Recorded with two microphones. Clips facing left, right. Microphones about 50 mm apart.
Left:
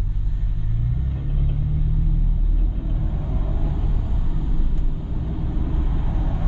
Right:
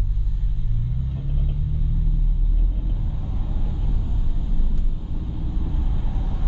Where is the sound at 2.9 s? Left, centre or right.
Left.